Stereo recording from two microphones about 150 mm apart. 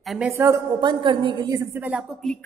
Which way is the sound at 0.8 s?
30° right (ahead or behind).